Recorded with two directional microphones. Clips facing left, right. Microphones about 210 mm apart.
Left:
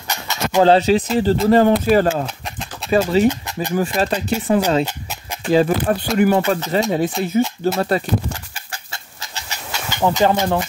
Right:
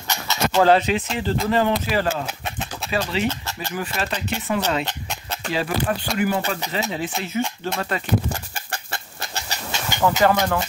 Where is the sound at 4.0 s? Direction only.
35° left (ahead or behind).